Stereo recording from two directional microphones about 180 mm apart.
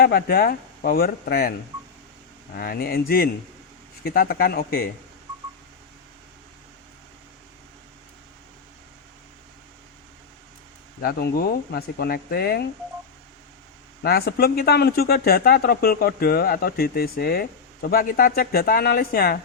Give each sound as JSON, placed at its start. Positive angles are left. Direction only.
{"t": 0.0, "sound": "speech", "side_deg": 55}
{"t": 2.6, "sound": "speech", "side_deg": 55}
{"t": 11.0, "sound": "speech", "side_deg": 60}
{"t": 14.0, "sound": "speech", "side_deg": 60}